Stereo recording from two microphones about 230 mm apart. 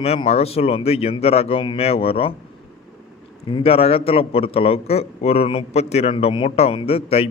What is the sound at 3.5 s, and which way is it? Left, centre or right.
Speech, left.